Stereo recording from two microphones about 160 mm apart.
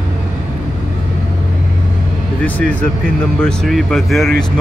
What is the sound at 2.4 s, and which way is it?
Speech, 10° left (ahead or behind).